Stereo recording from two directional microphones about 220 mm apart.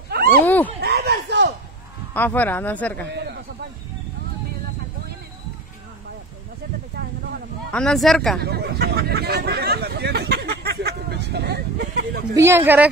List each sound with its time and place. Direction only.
0.1 s a sound: 45° right (ahead or behind)
2.1 s speech: 10° left (ahead or behind)
3.1 s a sound: 50° right (ahead or behind)
7.7 s speech: 5° left (ahead or behind)
8.4 s hubbub: 45° right (ahead or behind)
12.4 s a woman's voice: 10° right (ahead or behind)